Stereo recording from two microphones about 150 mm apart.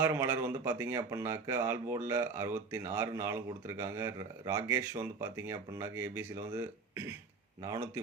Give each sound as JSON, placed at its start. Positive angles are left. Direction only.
{"t": 0.0, "sound": "speech", "side_deg": -15}